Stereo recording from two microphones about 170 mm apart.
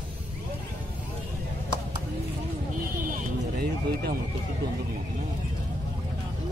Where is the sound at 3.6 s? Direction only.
65° right (ahead or behind).